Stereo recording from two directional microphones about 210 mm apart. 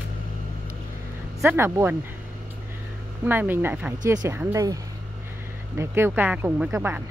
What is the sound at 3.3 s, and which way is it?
Speech, 10° right (ahead or behind).